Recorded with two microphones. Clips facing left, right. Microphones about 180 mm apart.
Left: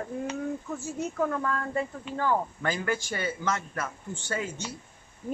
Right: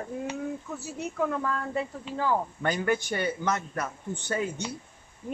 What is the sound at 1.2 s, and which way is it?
A woman's voice, centre (ahead or behind).